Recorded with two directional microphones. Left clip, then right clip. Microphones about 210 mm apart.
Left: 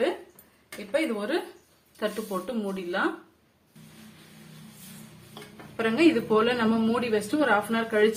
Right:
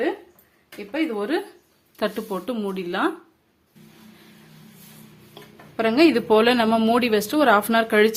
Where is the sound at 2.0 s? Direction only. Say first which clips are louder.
Right 4 dB; 50° right (ahead or behind).